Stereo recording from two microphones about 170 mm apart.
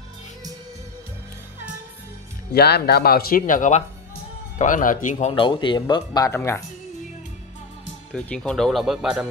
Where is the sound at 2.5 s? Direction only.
70° left (ahead or behind); by 5.3 s 50° left (ahead or behind).